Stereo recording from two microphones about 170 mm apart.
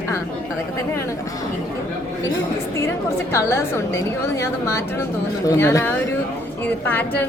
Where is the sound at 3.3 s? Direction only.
15° left (ahead or behind).